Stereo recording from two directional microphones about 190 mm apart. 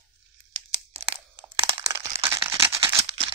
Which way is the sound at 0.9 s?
30° right (ahead or behind).